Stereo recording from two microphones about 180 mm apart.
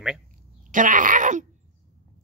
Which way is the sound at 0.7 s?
45° right (ahead or behind).